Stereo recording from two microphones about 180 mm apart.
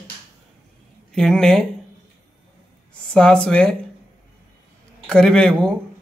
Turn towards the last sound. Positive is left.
turn(degrees=5)  # may be behind; listen again after turning